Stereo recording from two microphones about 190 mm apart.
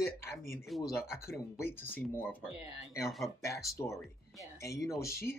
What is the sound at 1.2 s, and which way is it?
Speech, 15° left (ahead or behind).